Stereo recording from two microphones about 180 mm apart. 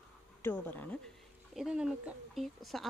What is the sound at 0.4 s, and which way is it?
Speech, 10° left (ahead or behind).